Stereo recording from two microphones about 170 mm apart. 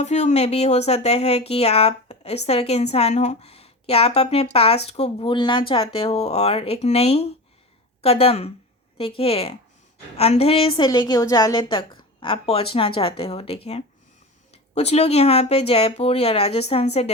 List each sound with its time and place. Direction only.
0.0 s a woman's voice: 40° left (ahead or behind)